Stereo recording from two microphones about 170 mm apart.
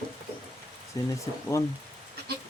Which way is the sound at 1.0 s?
20° left (ahead or behind).